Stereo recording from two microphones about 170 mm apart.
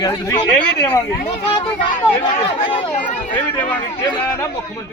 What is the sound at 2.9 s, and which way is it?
Speech, 50° left (ahead or behind).